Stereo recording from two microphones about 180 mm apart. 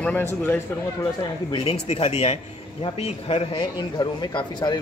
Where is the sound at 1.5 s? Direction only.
30° left (ahead or behind).